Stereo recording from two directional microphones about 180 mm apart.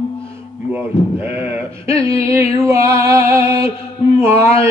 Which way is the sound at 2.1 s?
15° right (ahead or behind).